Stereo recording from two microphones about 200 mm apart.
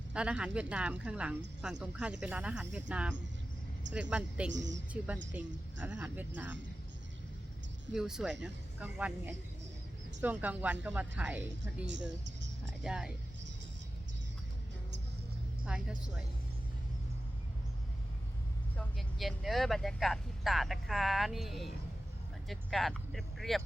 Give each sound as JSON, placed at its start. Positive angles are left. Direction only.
{"t": 0.1, "sound": "speech", "side_deg": -5}
{"t": 4.5, "sound": "a woman's voice", "side_deg": -65}
{"t": 4.9, "sound": "speech", "side_deg": -5}
{"t": 7.9, "sound": "speech", "side_deg": -5}
{"t": 11.9, "sound": "speech", "side_deg": -65}
{"t": 12.8, "sound": "speech", "side_deg": -5}
{"t": 15.6, "sound": "speech", "side_deg": -5}
{"t": 18.8, "sound": "speech", "side_deg": 0}